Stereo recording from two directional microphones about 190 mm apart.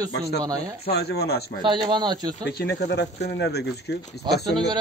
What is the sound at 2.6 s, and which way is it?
Speech, 65° left (ahead or behind).